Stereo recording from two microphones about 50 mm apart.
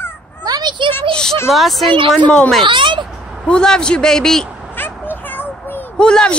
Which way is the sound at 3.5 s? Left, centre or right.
Centre.